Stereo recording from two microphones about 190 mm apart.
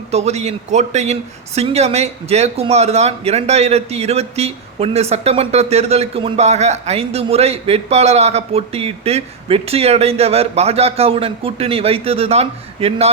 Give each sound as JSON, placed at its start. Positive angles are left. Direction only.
{"t": 0.1, "sound": "speech", "side_deg": -35}